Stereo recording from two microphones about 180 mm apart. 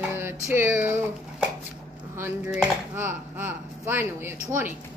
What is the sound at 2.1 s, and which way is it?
Speech, 10° right (ahead or behind).